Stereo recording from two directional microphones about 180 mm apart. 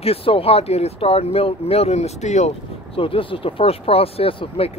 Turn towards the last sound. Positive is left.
turn(degrees=30)  # may be behind; listen again after turning